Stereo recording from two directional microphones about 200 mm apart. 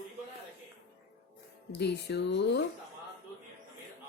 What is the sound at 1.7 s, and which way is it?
Speech, 60° left (ahead or behind).